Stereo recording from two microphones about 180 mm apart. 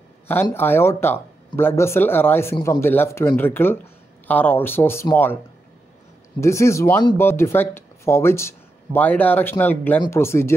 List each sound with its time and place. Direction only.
0.3 s speech: 10° left (ahead or behind)
6.4 s speech: 15° left (ahead or behind)